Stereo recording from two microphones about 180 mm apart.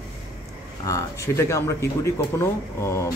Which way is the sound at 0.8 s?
15° left (ahead or behind).